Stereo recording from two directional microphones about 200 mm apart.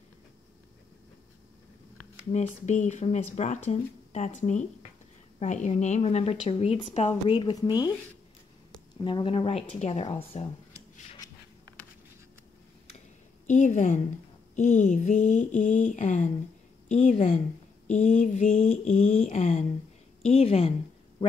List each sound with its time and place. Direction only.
2.3 s speech: 35° left (ahead or behind); by 7.9 s 20° left (ahead or behind)
9.0 s speech: 25° left (ahead or behind)
13.5 s speech: 35° left (ahead or behind)